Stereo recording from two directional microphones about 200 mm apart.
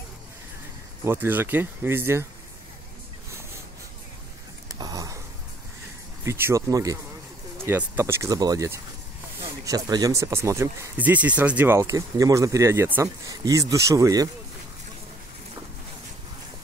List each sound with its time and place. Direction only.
1.0 s speech: 10° right (ahead or behind)
4.7 s a sound: 20° right (ahead or behind)
6.2 s speech: 10° right (ahead or behind)